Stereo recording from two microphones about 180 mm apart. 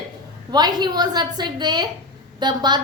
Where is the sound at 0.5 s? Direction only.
25° right (ahead or behind).